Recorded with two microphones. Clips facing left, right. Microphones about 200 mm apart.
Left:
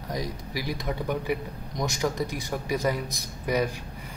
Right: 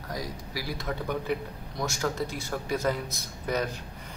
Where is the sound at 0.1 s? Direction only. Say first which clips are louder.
Left 3 dB; 20° left (ahead or behind).